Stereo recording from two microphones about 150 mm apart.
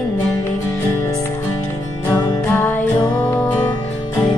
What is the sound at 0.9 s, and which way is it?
Music, 15° left (ahead or behind).